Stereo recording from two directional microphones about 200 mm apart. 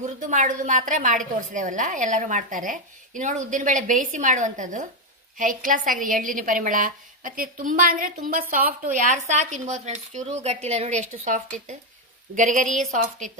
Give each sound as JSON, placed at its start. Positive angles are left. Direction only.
{"t": 0.0, "sound": "a woman's voice", "side_deg": -40}